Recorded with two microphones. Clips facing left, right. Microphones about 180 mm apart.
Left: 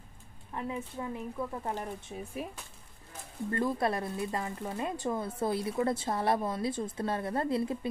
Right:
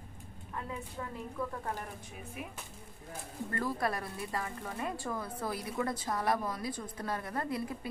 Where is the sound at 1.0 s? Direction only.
20° left (ahead or behind).